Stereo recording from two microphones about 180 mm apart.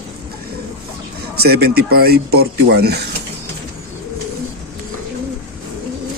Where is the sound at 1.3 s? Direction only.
60° right (ahead or behind).